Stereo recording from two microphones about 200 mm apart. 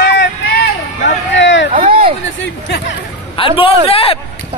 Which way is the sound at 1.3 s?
65° left (ahead or behind).